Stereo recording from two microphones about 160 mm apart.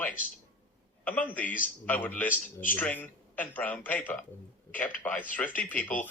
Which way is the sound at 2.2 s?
55° left (ahead or behind).